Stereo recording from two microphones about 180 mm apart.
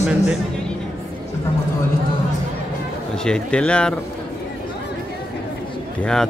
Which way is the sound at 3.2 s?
5° left (ahead or behind).